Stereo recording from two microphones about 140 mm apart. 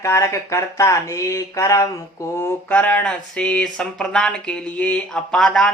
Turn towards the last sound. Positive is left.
turn(degrees=5)  # may be behind; listen again after turning